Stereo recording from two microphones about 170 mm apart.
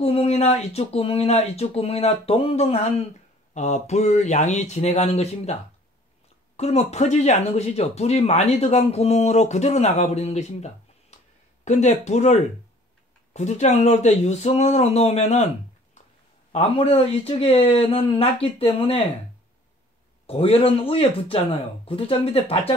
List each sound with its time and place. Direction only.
0.0 s speech: 35° left (ahead or behind)
16.5 s speech: 35° left (ahead or behind)
20.2 s speech: 35° left (ahead or behind)